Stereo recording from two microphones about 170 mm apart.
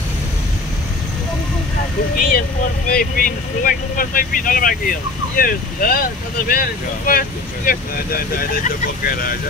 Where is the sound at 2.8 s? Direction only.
60° left (ahead or behind).